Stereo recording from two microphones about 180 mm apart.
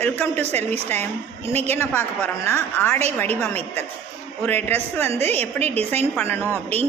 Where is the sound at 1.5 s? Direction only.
10° left (ahead or behind).